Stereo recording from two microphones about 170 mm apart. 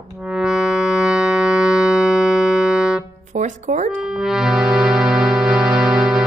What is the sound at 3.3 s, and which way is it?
Speech, 45° right (ahead or behind).